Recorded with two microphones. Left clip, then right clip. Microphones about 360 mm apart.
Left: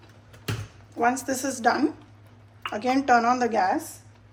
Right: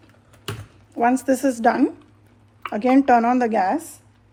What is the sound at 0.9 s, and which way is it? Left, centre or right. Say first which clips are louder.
Speech: right 5 dB; right.